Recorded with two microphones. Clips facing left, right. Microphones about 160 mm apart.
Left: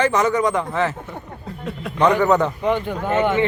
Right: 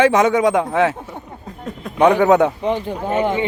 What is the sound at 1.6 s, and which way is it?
Speech, 50° right (ahead or behind).